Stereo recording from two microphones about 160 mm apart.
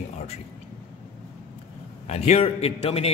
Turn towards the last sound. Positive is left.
turn(degrees=40)  # may be behind; listen again after turning